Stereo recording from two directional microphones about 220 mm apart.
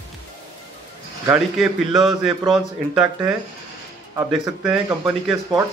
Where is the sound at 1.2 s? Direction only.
5° right (ahead or behind).